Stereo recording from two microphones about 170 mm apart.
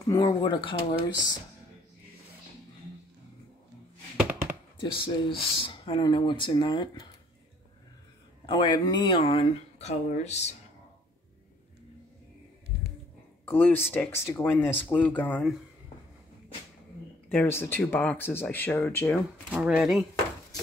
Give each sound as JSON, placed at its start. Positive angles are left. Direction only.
{"t": 0.0, "sound": "speech", "side_deg": 20}
{"t": 4.3, "sound": "a sound", "side_deg": -10}
{"t": 4.7, "sound": "speech", "side_deg": 30}
{"t": 8.5, "sound": "speech", "side_deg": 25}
{"t": 13.5, "sound": "speech", "side_deg": 10}
{"t": 17.3, "sound": "speech", "side_deg": 10}
{"t": 19.5, "sound": "speech", "side_deg": -5}